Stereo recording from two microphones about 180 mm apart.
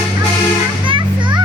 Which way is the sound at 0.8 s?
25° right (ahead or behind).